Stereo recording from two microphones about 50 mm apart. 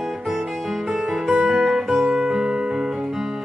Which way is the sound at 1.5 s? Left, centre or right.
Centre.